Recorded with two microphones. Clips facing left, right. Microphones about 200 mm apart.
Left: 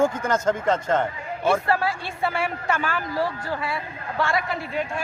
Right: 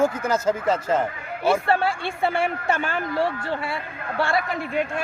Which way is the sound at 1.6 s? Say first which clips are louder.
Right 2 dB; 30° right (ahead or behind).